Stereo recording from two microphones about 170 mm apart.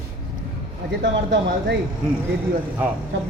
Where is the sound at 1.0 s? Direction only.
90° right.